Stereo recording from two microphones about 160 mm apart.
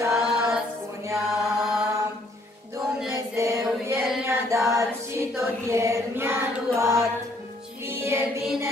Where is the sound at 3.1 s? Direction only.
20° right (ahead or behind).